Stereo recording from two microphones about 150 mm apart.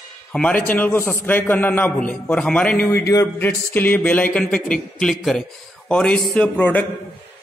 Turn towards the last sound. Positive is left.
turn(degrees=10)  # may be behind; listen again after turning